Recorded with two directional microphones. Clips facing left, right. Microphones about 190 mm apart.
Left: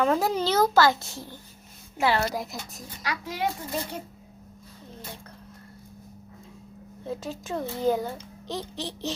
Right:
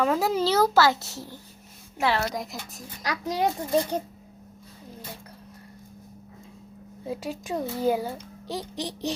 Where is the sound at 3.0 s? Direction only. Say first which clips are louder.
Right 4 dB; 40° right (ahead or behind).